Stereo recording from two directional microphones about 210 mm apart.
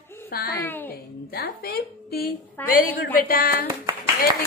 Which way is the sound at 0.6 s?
10° left (ahead or behind).